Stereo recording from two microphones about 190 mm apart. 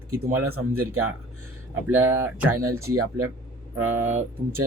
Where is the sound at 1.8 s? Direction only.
10° right (ahead or behind).